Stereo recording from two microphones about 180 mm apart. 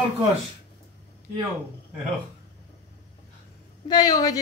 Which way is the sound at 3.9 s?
20° left (ahead or behind).